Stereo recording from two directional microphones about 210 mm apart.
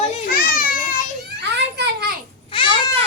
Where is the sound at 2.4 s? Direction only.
25° left (ahead or behind).